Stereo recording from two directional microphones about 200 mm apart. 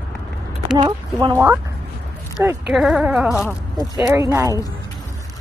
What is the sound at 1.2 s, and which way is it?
Speech, 15° right (ahead or behind).